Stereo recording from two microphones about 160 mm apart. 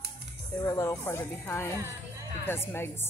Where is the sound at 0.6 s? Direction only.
20° left (ahead or behind).